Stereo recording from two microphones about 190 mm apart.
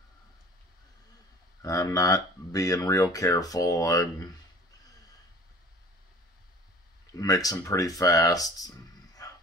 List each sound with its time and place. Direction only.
1.6 s speech: 15° left (ahead or behind)
7.2 s speech: 20° left (ahead or behind)